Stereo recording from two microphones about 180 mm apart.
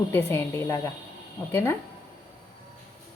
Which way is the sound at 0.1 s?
10° left (ahead or behind).